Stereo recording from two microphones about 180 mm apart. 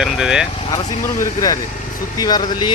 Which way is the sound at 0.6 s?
30° left (ahead or behind).